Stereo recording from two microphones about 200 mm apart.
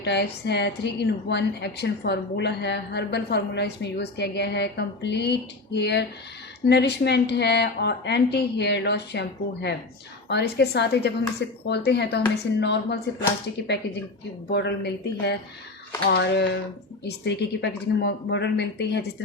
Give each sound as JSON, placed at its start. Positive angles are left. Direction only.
{"t": 0.0, "sound": "a woman's voice", "side_deg": 55}
{"t": 14.5, "sound": "a woman's voice", "side_deg": 55}